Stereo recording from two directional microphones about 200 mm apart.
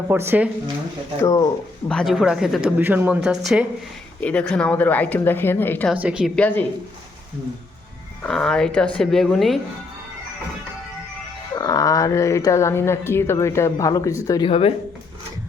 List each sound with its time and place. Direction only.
0.1 s speech: 10° right (ahead or behind)
1.2 s speech: 20° left (ahead or behind)
1.9 s speech: centre (ahead or behind)
5.9 s speech: 5° right (ahead or behind)
8.2 s speech: 5° left (ahead or behind)
11.5 s speech: 20° left (ahead or behind)